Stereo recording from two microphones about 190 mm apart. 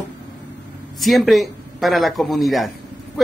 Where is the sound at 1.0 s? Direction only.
Centre (ahead or behind).